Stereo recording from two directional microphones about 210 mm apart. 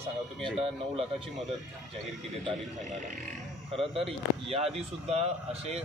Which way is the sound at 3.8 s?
30° right (ahead or behind).